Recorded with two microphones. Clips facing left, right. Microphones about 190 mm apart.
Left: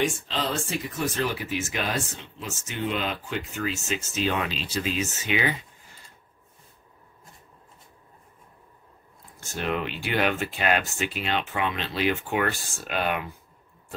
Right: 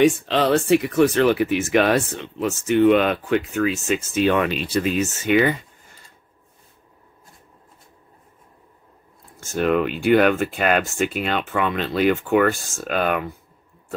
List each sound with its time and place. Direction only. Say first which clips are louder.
0.0 s speech: right 10 dB; 70° right (ahead or behind); by 5.7 s 50° right (ahead or behind)
9.4 s speech: right 9 dB; 50° right (ahead or behind)